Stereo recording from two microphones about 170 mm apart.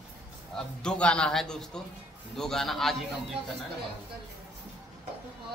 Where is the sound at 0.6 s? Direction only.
5° left (ahead or behind).